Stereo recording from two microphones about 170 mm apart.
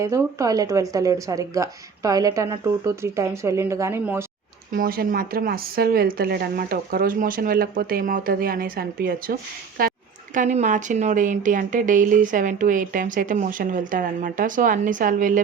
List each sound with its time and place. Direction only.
0.0 s speech: 15° right (ahead or behind)
4.7 s a woman's voice: 55° right (ahead or behind)
10.3 s speech: 45° right (ahead or behind)